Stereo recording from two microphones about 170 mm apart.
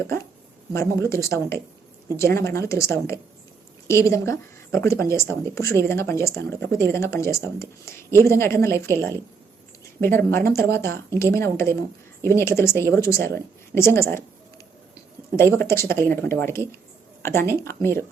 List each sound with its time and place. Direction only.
0.7 s speech: 15° left (ahead or behind)
15.4 s speech: 15° left (ahead or behind)